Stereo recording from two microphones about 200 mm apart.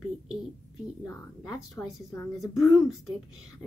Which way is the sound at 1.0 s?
15° left (ahead or behind).